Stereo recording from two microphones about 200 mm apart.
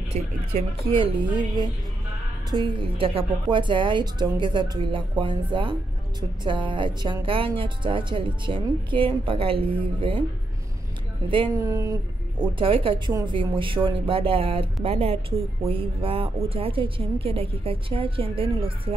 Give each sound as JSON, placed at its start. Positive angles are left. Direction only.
{"t": 0.1, "sound": "speech", "side_deg": -35}
{"t": 11.2, "sound": "speech", "side_deg": -25}
{"t": 11.6, "sound": "speech", "side_deg": -15}